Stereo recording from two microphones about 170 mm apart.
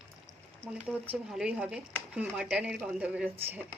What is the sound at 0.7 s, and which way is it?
Speech, 10° right (ahead or behind).